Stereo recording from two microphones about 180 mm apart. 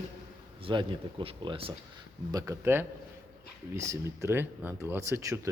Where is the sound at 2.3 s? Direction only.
20° right (ahead or behind).